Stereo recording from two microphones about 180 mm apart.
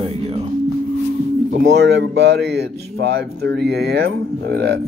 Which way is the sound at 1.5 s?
75° right (ahead or behind).